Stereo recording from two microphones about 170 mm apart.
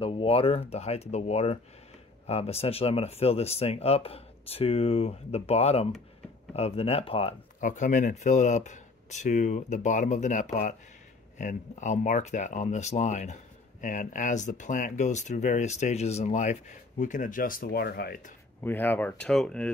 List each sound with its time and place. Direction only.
0.0 s speech: 35° left (ahead or behind)
7.6 s speech: 45° left (ahead or behind)
18.6 s speech: 10° left (ahead or behind)